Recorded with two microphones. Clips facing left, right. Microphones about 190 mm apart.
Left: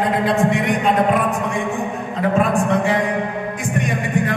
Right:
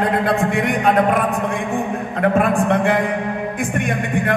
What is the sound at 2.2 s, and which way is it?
Speech, 55° right (ahead or behind).